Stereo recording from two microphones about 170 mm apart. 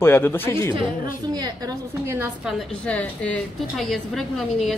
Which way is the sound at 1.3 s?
20° right (ahead or behind).